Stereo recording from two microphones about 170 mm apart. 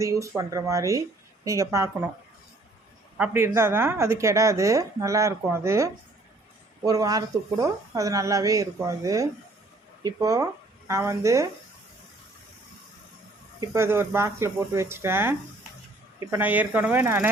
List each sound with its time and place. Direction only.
0.0 s a woman's voice: 20° right (ahead or behind)
3.2 s a woman's voice: 15° right (ahead or behind)
13.6 s a woman's voice: 15° right (ahead or behind)